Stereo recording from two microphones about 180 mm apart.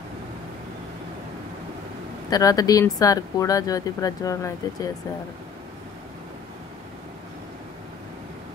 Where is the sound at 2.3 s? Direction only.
20° left (ahead or behind).